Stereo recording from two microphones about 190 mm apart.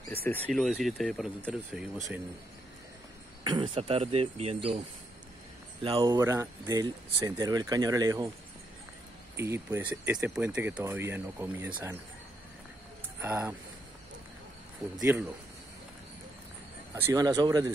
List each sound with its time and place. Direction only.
0.1 s speech: 10° left (ahead or behind)
3.4 s speech: 25° right (ahead or behind)
5.9 s speech: 20° right (ahead or behind)
9.4 s speech: 15° right (ahead or behind)
13.2 s speech: 10° right (ahead or behind)
16.9 s speech: 15° right (ahead or behind)